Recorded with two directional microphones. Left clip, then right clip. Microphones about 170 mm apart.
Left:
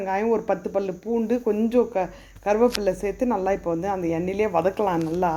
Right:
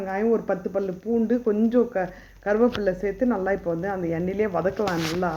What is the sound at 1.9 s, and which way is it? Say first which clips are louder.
Speech: left 1 dB; 20° left (ahead or behind).